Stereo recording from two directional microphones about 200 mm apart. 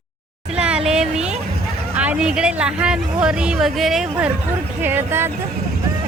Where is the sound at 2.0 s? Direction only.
5° right (ahead or behind).